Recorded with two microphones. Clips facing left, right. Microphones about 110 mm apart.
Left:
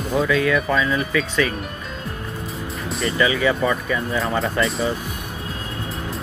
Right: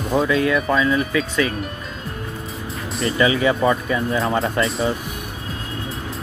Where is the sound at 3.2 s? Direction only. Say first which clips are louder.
Right 2 dB; 20° right (ahead or behind).